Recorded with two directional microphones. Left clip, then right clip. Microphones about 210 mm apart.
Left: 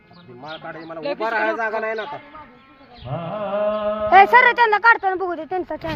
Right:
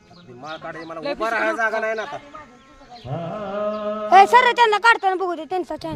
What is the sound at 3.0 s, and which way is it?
Mantra, 55° right (ahead or behind).